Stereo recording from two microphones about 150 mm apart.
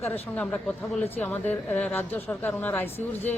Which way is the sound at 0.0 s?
10° left (ahead or behind).